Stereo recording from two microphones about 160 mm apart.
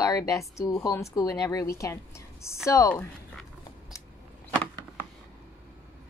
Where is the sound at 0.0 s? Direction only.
20° left (ahead or behind).